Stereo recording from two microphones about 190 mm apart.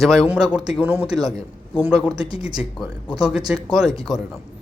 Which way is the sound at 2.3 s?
20° right (ahead or behind).